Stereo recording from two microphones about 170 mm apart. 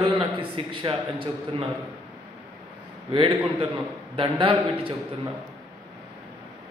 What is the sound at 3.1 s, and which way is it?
A man's voice, 30° right (ahead or behind).